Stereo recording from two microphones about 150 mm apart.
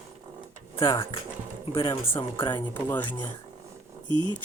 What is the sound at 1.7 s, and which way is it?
Speech, 35° left (ahead or behind).